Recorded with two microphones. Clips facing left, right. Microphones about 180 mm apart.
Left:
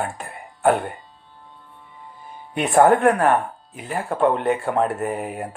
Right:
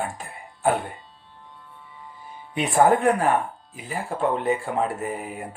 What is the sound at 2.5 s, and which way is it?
Speech, 60° left (ahead or behind).